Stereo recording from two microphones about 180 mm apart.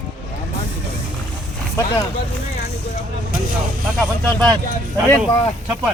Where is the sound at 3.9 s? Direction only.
5° left (ahead or behind).